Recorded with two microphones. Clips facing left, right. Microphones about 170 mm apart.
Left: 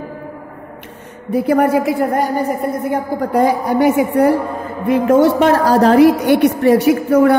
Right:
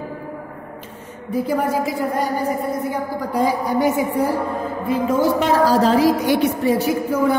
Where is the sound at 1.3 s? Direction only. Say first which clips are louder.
Left 7 dB; 65° left (ahead or behind).